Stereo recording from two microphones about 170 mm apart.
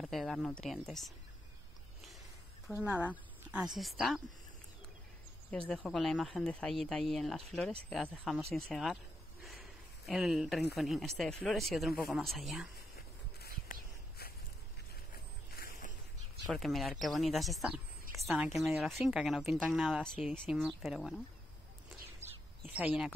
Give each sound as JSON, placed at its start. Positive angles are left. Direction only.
{"t": 0.0, "sound": "speech", "side_deg": 0}
{"t": 2.8, "sound": "speech", "side_deg": -10}
{"t": 5.7, "sound": "speech", "side_deg": 5}
{"t": 9.4, "sound": "a sound", "side_deg": 0}
{"t": 10.8, "sound": "speech", "side_deg": 0}
{"t": 13.4, "sound": "whispering", "side_deg": 60}
{"t": 15.5, "sound": "a sound", "side_deg": 55}
{"t": 16.4, "sound": "speech", "side_deg": 0}
{"t": 22.7, "sound": "speech", "side_deg": -5}